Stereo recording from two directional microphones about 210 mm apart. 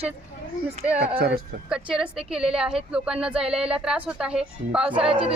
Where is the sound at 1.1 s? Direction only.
45° right (ahead or behind).